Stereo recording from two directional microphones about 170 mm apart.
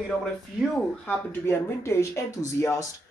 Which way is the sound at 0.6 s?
Centre (ahead or behind).